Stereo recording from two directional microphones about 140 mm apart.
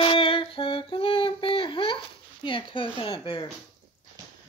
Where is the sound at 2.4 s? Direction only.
40° left (ahead or behind).